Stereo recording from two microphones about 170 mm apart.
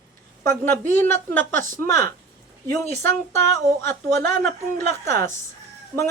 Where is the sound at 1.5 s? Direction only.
50° right (ahead or behind).